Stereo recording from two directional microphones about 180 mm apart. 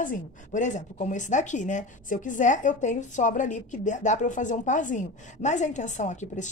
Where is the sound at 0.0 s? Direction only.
45° left (ahead or behind).